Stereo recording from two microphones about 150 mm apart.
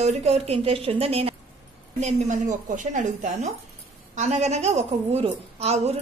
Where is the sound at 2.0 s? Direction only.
50° right (ahead or behind).